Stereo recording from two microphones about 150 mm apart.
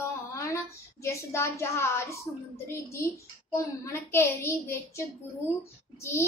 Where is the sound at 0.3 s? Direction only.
20° left (ahead or behind).